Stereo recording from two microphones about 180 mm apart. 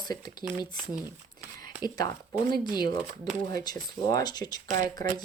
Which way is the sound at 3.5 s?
20° left (ahead or behind).